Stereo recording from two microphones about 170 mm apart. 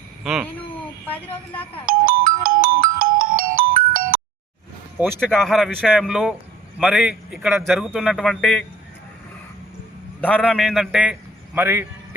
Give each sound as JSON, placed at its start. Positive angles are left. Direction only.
{"t": 1.9, "sound": "ringtone", "side_deg": -55}
{"t": 4.9, "sound": "speech", "side_deg": -10}
{"t": 5.3, "sound": "a man's voice", "side_deg": 0}
{"t": 10.2, "sound": "a man's voice", "side_deg": 10}
{"t": 11.5, "sound": "speech", "side_deg": -15}